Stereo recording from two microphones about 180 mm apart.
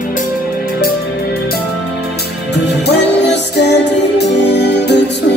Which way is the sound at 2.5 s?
70° left (ahead or behind).